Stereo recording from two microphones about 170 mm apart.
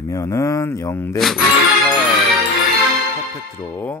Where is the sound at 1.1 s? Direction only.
Centre (ahead or behind).